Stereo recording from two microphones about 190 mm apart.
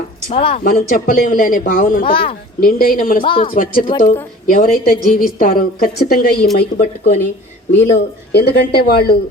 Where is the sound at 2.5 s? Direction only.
50° left (ahead or behind).